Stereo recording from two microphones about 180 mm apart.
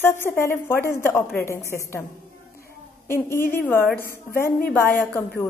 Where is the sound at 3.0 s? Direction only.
15° left (ahead or behind).